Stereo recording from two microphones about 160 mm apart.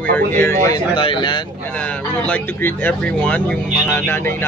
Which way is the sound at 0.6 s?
25° left (ahead or behind).